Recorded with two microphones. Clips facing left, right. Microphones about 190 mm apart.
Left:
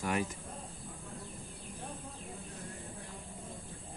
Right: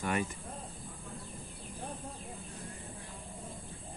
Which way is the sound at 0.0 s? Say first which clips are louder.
Even; 5° left (ahead or behind).